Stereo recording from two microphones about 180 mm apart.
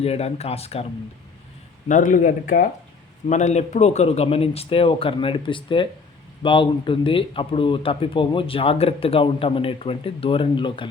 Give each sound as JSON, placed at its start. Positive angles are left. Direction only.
{"t": 0.0, "sound": "a man's voice", "side_deg": 35}
{"t": 1.9, "sound": "a man's voice", "side_deg": 50}